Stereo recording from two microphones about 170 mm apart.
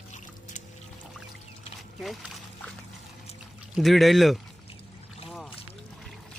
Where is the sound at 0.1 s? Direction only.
45° left (ahead or behind).